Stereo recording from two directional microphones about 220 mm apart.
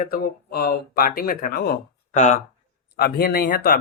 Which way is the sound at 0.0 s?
45° left (ahead or behind).